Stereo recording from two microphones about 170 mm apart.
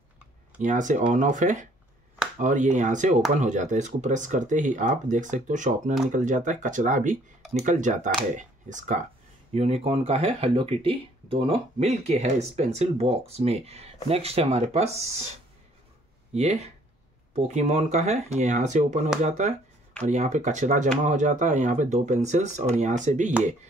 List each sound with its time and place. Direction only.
0.6 s speech: 45° right (ahead or behind)
16.3 s speech: 40° right (ahead or behind)